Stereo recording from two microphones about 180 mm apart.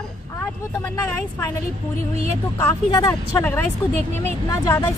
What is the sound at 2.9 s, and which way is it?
Speech, 20° left (ahead or behind).